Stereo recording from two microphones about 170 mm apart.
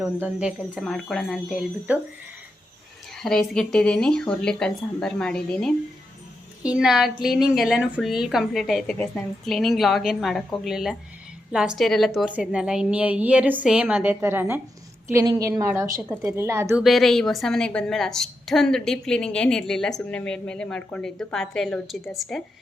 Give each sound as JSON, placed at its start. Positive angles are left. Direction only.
{"t": 0.0, "sound": "a woman's voice", "side_deg": -5}
{"t": 3.2, "sound": "a woman's voice", "side_deg": 5}
{"t": 16.8, "sound": "a woman's voice", "side_deg": 0}